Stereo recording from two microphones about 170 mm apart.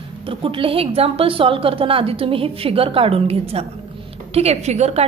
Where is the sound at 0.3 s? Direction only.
30° right (ahead or behind).